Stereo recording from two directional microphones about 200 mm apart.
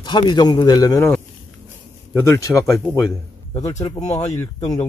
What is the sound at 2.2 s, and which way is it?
Speech, 15° left (ahead or behind).